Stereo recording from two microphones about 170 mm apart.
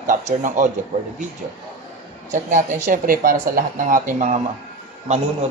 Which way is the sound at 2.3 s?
50° right (ahead or behind).